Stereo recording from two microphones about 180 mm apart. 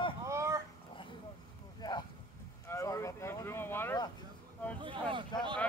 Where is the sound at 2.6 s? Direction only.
15° left (ahead or behind).